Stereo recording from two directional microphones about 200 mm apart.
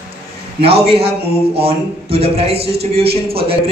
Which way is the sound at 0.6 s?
30° right (ahead or behind).